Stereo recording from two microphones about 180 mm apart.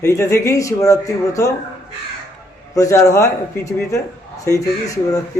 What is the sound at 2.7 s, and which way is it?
Speech, 20° left (ahead or behind).